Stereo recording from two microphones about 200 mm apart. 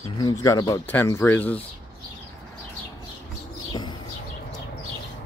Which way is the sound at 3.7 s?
20° left (ahead or behind).